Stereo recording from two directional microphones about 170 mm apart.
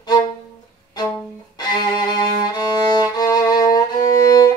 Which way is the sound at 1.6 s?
25° left (ahead or behind).